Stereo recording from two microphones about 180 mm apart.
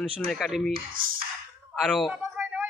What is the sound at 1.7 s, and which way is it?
Speech, centre (ahead or behind).